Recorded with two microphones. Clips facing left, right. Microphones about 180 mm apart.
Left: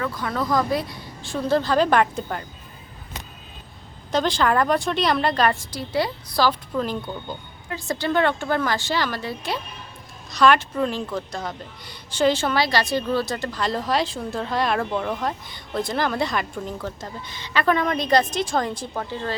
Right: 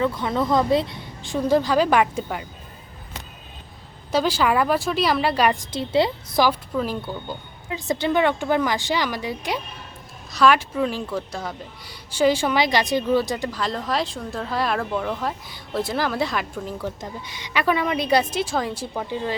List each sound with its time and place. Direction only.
0.0 s speech: 25° right (ahead or behind)
4.1 s speech: 5° right (ahead or behind)
5.7 s a woman's voice: 25° right (ahead or behind)
6.7 s speech: 5° right (ahead or behind)
7.7 s speech: 20° right (ahead or behind)
13.6 s speech: centre (ahead or behind)